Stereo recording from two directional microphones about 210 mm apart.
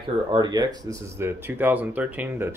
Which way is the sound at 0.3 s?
20° right (ahead or behind).